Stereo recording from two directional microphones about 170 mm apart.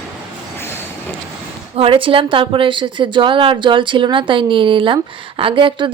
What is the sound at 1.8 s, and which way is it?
A woman's voice, 30° right (ahead or behind).